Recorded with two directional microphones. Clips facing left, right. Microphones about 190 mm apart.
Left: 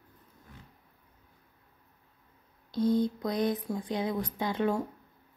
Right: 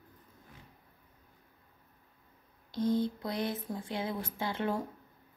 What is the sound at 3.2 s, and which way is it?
Speech, 15° left (ahead or behind).